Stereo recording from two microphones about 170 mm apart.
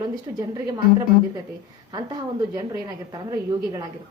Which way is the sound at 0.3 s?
20° right (ahead or behind).